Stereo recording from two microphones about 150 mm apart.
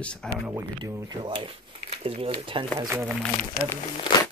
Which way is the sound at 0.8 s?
30° right (ahead or behind).